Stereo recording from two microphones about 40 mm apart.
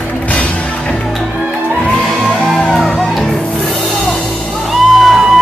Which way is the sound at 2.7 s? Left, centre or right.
Centre.